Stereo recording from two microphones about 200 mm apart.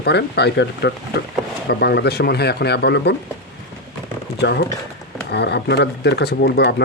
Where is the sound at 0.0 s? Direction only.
55° left (ahead or behind).